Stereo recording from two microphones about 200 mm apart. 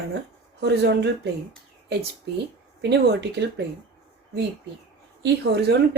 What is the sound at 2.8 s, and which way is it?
Speech, 60° right (ahead or behind).